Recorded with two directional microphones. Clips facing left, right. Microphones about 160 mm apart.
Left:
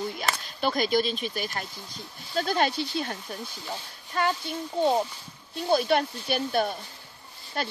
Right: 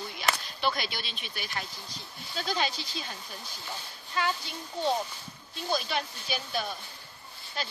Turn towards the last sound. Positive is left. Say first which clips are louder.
# left 6 dB
turn(degrees=55)  # may be behind; listen again after turning